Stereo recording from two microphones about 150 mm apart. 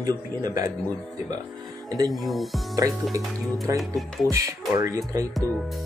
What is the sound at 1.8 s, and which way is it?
Speech, 25° right (ahead or behind).